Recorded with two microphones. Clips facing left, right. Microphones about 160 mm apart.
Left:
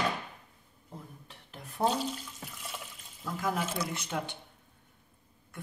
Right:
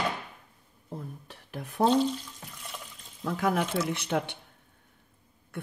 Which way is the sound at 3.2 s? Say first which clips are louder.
Right 5 dB; 65° right (ahead or behind).